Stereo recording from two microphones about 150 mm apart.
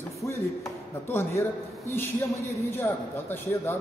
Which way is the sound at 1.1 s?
15° left (ahead or behind).